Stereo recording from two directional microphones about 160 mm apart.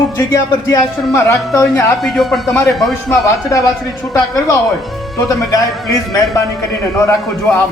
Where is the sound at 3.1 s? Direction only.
20° left (ahead or behind).